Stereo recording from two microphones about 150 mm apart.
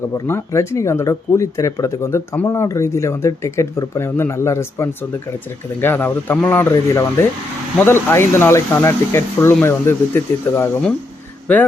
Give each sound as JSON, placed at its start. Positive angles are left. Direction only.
{"t": 0.3, "sound": "speech", "side_deg": 15}